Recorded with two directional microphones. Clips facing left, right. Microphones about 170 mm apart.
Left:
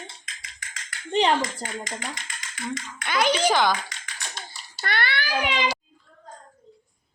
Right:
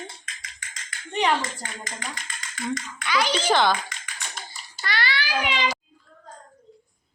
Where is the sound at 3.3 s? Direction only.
10° left (ahead or behind).